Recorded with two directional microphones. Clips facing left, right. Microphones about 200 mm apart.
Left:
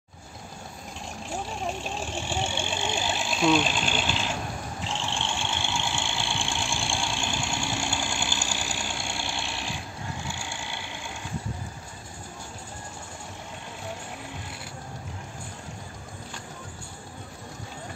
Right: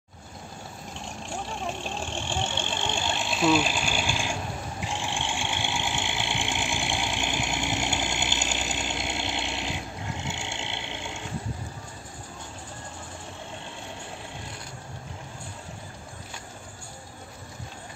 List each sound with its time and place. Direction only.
2.1 s vehicle: 5° left (ahead or behind); by 11.2 s 25° right (ahead or behind)